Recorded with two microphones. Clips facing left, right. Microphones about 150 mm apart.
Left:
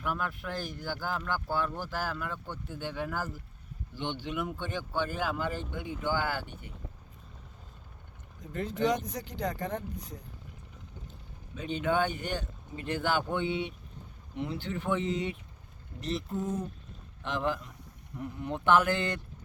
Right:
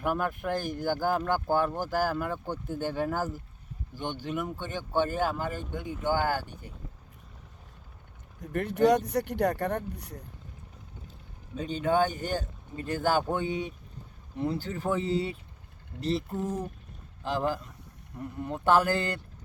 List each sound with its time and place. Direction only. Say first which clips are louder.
0.0 s speech: right 5 dB; 50° right (ahead or behind)
8.4 s speech: right 6 dB; 65° right (ahead or behind)
11.5 s speech: right 3 dB; 35° right (ahead or behind)